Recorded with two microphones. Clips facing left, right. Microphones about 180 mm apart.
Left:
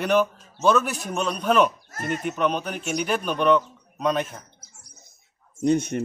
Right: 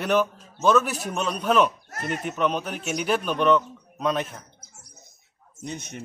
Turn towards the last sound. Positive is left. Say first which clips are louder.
# left 14 dB
turn(degrees=55)  # may be behind; listen again after turning